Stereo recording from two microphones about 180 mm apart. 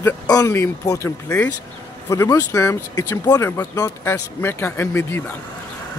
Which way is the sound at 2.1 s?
15° left (ahead or behind).